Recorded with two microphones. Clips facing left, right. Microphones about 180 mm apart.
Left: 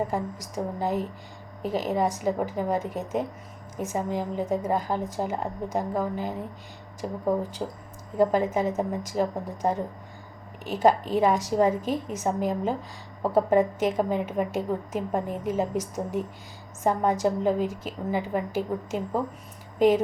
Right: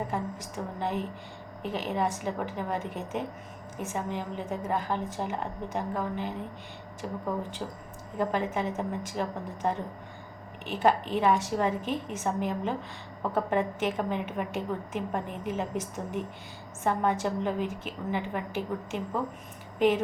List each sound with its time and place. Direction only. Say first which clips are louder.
0.1 s a woman's voice: left 3 dB; 40° left (ahead or behind); by 7.8 s 25° left (ahead or behind)
8.2 s a woman's voice: left 6 dB; 40° left (ahead or behind)